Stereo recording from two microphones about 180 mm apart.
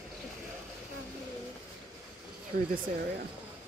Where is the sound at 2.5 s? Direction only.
50° right (ahead or behind).